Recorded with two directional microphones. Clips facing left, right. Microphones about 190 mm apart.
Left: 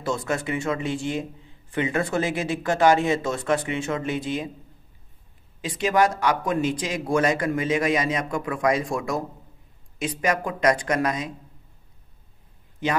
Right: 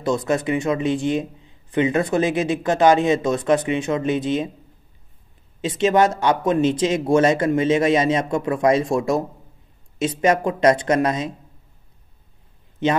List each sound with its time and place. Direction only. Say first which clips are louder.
0.0 s a man's voice: right 6 dB; 20° right (ahead or behind)
5.6 s a man's voice: right 4 dB; 25° right (ahead or behind)
12.8 s speech: right 6 dB; 25° right (ahead or behind)